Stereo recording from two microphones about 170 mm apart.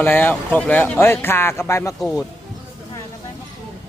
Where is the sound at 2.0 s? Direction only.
Centre (ahead or behind).